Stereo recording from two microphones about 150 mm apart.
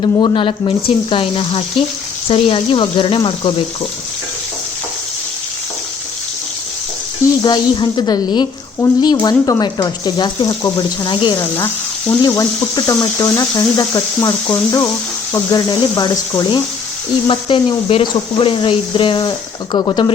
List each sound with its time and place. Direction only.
0.0 s speech: 30° left (ahead or behind)
7.4 s speech: 30° left (ahead or behind)